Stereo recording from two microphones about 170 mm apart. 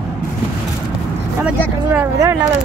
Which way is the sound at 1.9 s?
15° right (ahead or behind).